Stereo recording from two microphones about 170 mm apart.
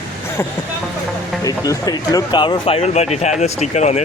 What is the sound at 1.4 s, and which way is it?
Speech, 20° left (ahead or behind).